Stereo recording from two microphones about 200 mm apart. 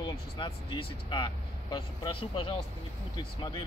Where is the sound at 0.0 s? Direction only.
25° left (ahead or behind).